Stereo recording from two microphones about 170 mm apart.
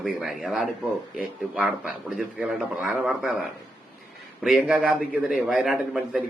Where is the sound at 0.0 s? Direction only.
Centre (ahead or behind).